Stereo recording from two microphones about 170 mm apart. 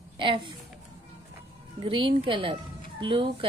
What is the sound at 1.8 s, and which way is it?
Speech, 30° right (ahead or behind).